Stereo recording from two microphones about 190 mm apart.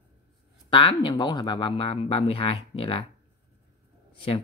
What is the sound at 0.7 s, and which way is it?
Speech, 25° left (ahead or behind).